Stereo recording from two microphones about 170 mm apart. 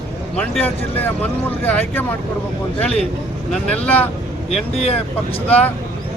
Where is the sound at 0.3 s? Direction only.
10° left (ahead or behind).